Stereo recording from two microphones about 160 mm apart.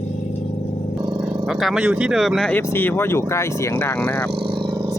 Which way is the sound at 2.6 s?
15° left (ahead or behind).